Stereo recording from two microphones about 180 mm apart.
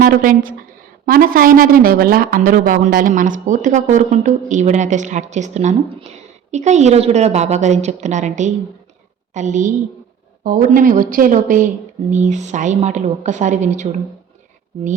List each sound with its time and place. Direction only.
0.0 s a woman's voice: 50° right (ahead or behind)